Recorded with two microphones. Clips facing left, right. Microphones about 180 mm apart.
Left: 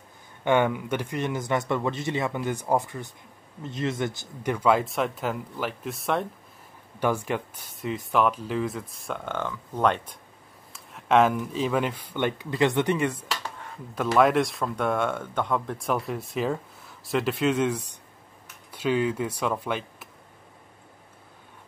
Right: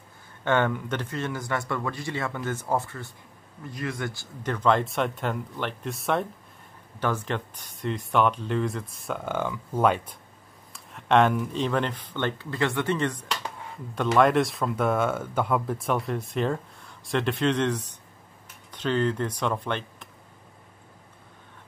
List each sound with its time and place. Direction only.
0.5 s speech: 10° left (ahead or behind)
7.0 s speech: 10° left (ahead or behind)